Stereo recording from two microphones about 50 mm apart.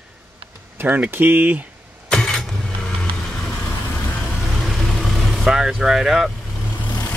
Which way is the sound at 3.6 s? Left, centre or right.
Left.